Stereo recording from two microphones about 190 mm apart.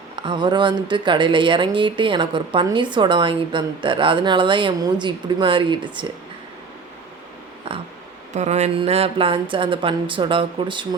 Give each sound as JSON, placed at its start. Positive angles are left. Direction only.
{"t": 0.2, "sound": "speech", "side_deg": -25}
{"t": 7.7, "sound": "a sound", "side_deg": -30}
{"t": 8.3, "sound": "speech", "side_deg": -35}